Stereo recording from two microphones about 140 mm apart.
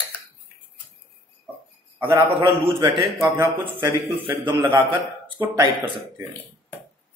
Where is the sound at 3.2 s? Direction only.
20° right (ahead or behind).